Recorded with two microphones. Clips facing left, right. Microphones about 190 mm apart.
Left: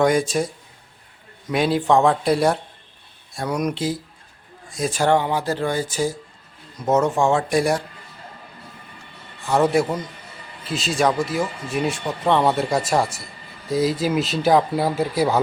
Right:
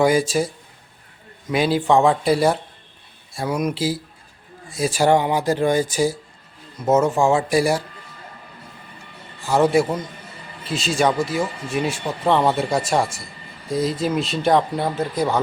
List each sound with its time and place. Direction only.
0.0 s speech: 5° right (ahead or behind)
9.5 s speech: centre (ahead or behind)